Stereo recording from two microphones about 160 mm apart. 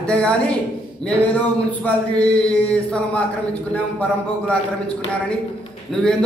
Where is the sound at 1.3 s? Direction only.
10° left (ahead or behind).